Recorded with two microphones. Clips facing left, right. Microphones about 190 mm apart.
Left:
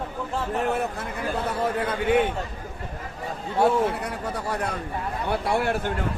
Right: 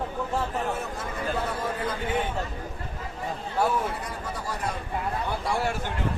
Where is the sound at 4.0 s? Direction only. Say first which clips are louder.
Left 4 dB; 65° left (ahead or behind).